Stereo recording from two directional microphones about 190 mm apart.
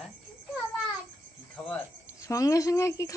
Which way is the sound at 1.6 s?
10° left (ahead or behind).